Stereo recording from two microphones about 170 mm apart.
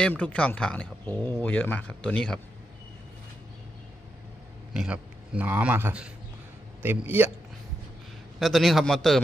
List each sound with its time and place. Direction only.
0.0 s speech: 10° left (ahead or behind)
4.7 s a man's voice: 5° right (ahead or behind)
8.4 s a man's voice: centre (ahead or behind)